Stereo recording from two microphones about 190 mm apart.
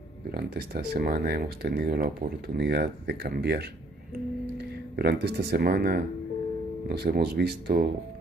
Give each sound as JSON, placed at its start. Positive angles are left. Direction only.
{"t": 0.3, "sound": "speech", "side_deg": -55}
{"t": 4.9, "sound": "speech", "side_deg": -55}